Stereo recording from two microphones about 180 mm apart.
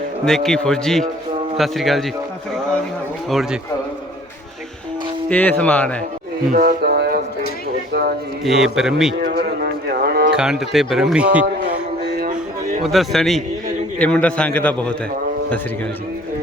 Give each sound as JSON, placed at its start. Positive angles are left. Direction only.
{"t": 0.3, "sound": "speech", "side_deg": 0}
{"t": 3.2, "sound": "speech", "side_deg": 0}
{"t": 5.3, "sound": "a man's voice", "side_deg": 10}
{"t": 6.5, "sound": "a sound", "side_deg": -50}
{"t": 8.4, "sound": "speech", "side_deg": 0}
{"t": 9.2, "sound": "a sound", "side_deg": -60}
{"t": 10.3, "sound": "speech", "side_deg": -5}
{"t": 12.8, "sound": "a man's voice", "side_deg": 0}